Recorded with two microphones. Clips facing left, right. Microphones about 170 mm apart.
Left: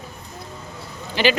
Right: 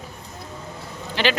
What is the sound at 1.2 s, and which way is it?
Speech, 5° left (ahead or behind).